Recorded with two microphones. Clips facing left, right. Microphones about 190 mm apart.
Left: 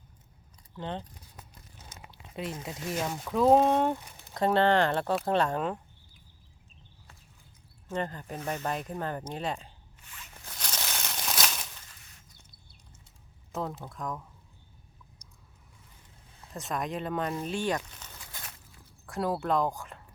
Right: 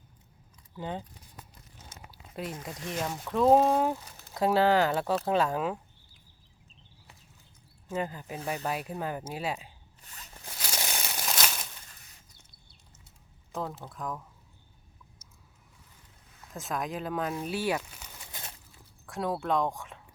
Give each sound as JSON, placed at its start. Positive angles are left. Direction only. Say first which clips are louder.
{"t": 0.8, "sound": "speech", "louder": "even", "side_deg": -5}
{"t": 2.0, "sound": "speech", "louder": "left 1 dB", "side_deg": -5}
{"t": 7.9, "sound": "speech", "louder": "even", "side_deg": -5}
{"t": 10.0, "sound": "a sound", "louder": "even", "side_deg": -40}
{"t": 10.6, "sound": "crumpling", "louder": "right 2 dB", "side_deg": -10}
{"t": 13.5, "sound": "speech", "louder": "left 1 dB", "side_deg": 0}
{"t": 15.2, "sound": "a sound", "louder": "left 1 dB", "side_deg": -5}
{"t": 16.5, "sound": "speech", "louder": "even", "side_deg": 0}
{"t": 19.0, "sound": "speech", "louder": "left 1 dB", "side_deg": 0}